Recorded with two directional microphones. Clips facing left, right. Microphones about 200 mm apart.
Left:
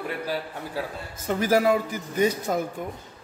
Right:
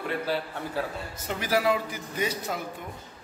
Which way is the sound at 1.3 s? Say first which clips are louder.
Left 5 dB; 45° left (ahead or behind).